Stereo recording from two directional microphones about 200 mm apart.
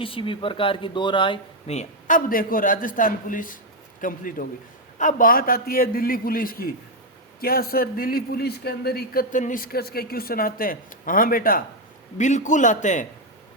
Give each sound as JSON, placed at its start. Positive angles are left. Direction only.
{"t": 0.0, "sound": "a man's voice", "side_deg": 25}